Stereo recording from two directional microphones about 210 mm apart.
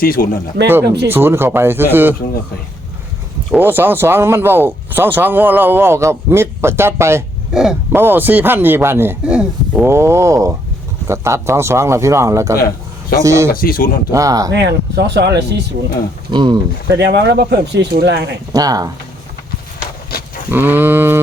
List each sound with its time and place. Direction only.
0.0 s speech: 45° left (ahead or behind)
0.6 s speech: 55° right (ahead or behind)
1.0 s speech: 10° right (ahead or behind)
3.5 s speech: 10° right (ahead or behind)
13.5 s speech: 45° left (ahead or behind)
14.1 s speech: 15° right (ahead or behind)
14.5 s speech: 55° right (ahead or behind)
16.3 s speech: 20° right (ahead or behind)
16.9 s speech: 55° right (ahead or behind)
18.5 s speech: 15° right (ahead or behind)
20.5 s speech: 10° right (ahead or behind)